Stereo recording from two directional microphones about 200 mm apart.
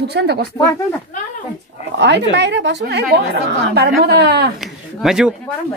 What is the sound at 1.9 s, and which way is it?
A woman's voice, 60° right (ahead or behind).